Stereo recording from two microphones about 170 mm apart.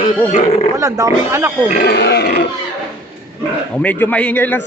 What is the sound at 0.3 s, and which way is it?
Speech, 45° left (ahead or behind).